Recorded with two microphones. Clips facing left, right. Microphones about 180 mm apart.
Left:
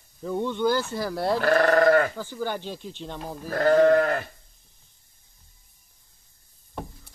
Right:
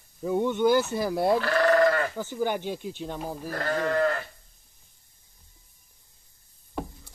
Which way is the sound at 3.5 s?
50° left (ahead or behind).